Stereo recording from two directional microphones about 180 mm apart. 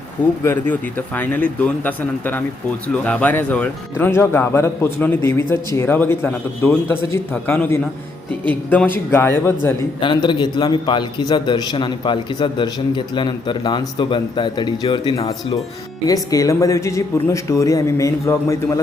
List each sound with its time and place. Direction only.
0.4 s speech: 10° left (ahead or behind)
10.0 s a man's voice: 25° left (ahead or behind)